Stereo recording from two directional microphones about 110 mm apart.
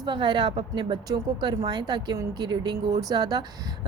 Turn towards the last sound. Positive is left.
turn(degrees=-35)  # may be behind; listen again after turning